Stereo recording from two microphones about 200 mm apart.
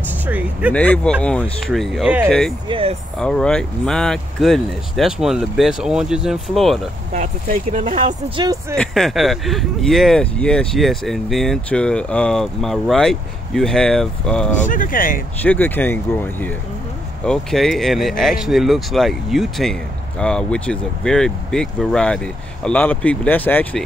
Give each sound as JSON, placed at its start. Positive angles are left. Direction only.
{"t": 0.3, "sound": "speech", "side_deg": -5}
{"t": 0.7, "sound": "speech", "side_deg": 5}
{"t": 2.7, "sound": "speech", "side_deg": -30}
{"t": 3.2, "sound": "speech", "side_deg": 5}
{"t": 7.1, "sound": "speech", "side_deg": -40}
{"t": 8.7, "sound": "speech", "side_deg": 0}
{"t": 14.6, "sound": "speech", "side_deg": 40}
{"t": 15.4, "sound": "speech", "side_deg": 10}